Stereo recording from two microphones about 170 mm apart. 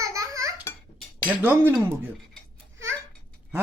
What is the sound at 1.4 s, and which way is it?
Speech, 10° right (ahead or behind).